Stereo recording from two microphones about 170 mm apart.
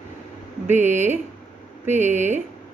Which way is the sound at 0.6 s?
45° right (ahead or behind).